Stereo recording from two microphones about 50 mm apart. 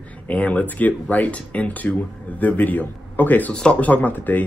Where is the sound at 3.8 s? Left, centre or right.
Left.